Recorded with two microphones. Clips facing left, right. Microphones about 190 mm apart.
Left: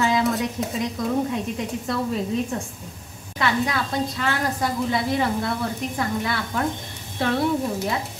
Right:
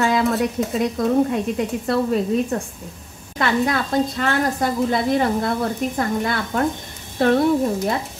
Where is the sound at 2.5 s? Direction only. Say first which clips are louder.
Right 4 dB; 50° right (ahead or behind).